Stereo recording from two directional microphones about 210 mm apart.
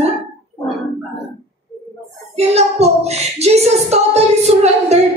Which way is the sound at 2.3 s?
30° right (ahead or behind).